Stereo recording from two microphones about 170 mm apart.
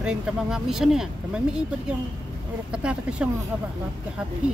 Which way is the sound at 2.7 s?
5° right (ahead or behind).